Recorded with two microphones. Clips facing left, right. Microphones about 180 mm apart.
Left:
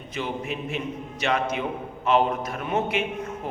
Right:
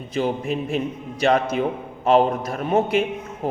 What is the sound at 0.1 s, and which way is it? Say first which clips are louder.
A man's voice: right 7 dB; 35° right (ahead or behind).